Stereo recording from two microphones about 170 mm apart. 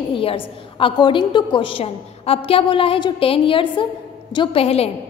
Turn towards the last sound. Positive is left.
turn(degrees=35)  # may be behind; listen again after turning